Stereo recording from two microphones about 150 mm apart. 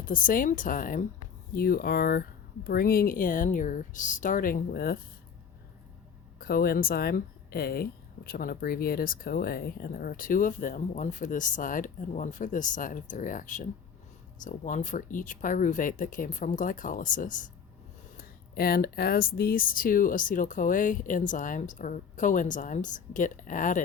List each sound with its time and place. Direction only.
0.0 s speech: 65° left (ahead or behind)
1.5 s speech: 80° left
2.6 s speech: 80° left
6.4 s speech: 90° left; by 17.5 s 60° left (ahead or behind)
18.2 s speech: 90° left; by 23.8 s 60° left (ahead or behind)